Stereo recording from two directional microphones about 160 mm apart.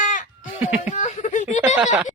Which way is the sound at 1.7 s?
10° right (ahead or behind).